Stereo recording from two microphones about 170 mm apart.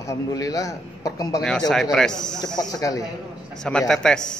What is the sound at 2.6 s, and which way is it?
Speech, 20° left (ahead or behind).